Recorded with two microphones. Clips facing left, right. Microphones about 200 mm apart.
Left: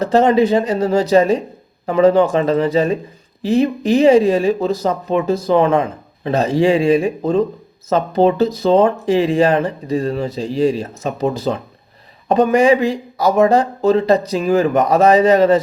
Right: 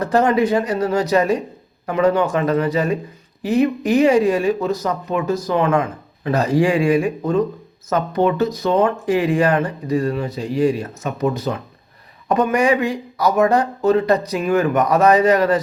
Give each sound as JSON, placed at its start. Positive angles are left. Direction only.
{"t": 0.0, "sound": "speech", "side_deg": 25}